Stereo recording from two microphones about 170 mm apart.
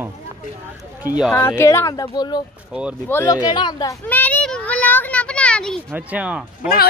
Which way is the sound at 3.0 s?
10° left (ahead or behind).